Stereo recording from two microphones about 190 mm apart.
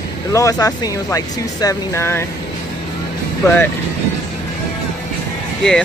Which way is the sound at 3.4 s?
10° left (ahead or behind).